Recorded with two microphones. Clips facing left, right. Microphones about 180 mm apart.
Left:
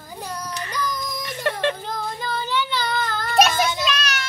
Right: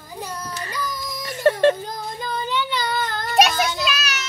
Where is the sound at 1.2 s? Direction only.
40° right (ahead or behind).